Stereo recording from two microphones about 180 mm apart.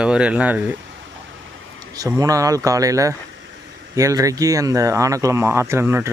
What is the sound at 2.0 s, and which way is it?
Speech, 20° right (ahead or behind).